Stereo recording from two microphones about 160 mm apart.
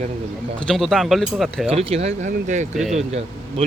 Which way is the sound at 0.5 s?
5° left (ahead or behind).